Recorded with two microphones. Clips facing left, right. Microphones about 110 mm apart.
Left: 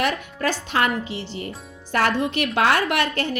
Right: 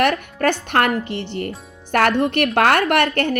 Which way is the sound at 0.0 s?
55° right (ahead or behind).